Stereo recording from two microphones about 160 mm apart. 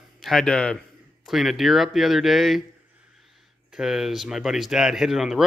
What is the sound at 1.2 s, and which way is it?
Speech, centre (ahead or behind).